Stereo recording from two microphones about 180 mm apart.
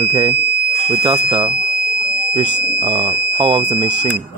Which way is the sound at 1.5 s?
55° right (ahead or behind).